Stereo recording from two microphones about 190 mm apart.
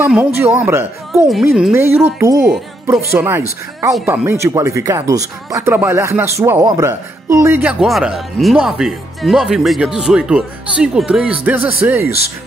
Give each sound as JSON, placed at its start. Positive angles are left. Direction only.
{"t": 0.0, "sound": "speech", "side_deg": -10}
{"t": 1.3, "sound": "speech", "side_deg": 0}
{"t": 1.7, "sound": "speech", "side_deg": -10}